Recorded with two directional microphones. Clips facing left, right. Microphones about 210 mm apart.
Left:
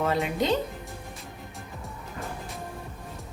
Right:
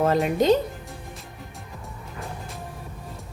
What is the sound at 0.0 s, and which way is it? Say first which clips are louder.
Speech: right 5 dB; 45° right (ahead or behind).